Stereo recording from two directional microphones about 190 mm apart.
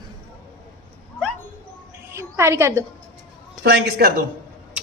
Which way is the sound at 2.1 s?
15° right (ahead or behind).